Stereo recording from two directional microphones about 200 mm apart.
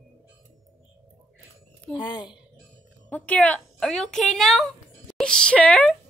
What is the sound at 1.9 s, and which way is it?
Speech, 20° left (ahead or behind).